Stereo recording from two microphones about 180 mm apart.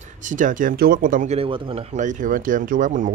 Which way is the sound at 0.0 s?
45° right (ahead or behind).